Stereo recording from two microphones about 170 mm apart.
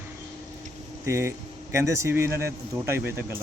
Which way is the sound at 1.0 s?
15° right (ahead or behind).